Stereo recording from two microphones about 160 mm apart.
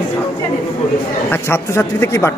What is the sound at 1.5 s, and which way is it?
Speech, 15° left (ahead or behind).